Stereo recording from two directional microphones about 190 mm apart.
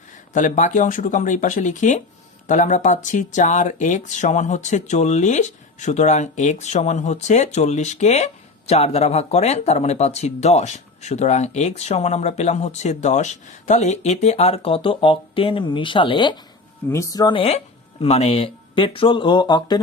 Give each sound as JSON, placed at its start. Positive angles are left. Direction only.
{"t": 0.3, "sound": "speech", "side_deg": 40}